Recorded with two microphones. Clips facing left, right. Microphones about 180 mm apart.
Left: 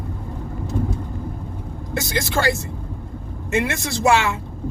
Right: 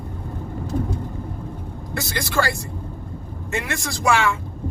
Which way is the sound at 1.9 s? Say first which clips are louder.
Left 3 dB; 20° left (ahead or behind).